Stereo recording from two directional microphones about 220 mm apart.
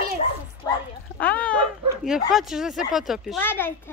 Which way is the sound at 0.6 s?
15° left (ahead or behind).